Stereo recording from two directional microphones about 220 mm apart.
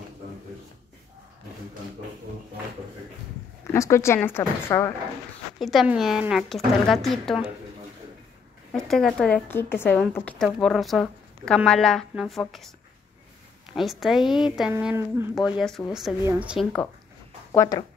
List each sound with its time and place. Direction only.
3.7 s speech: 15° left (ahead or behind)
5.6 s a woman's voice: centre (ahead or behind)
8.7 s a woman's voice: centre (ahead or behind)
13.7 s a woman's voice: centre (ahead or behind)
17.5 s speech: 15° left (ahead or behind)